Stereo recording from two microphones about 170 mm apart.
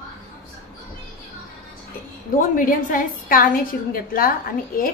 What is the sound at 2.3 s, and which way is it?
A woman's voice, 55° left (ahead or behind).